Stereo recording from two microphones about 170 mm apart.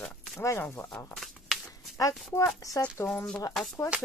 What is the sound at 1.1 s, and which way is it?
Shuffling cards, centre (ahead or behind).